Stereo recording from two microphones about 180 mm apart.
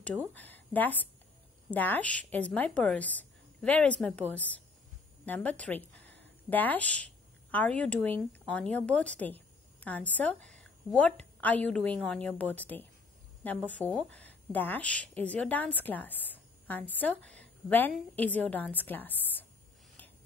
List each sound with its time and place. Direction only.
0.0 s a woman's voice: 10° left (ahead or behind)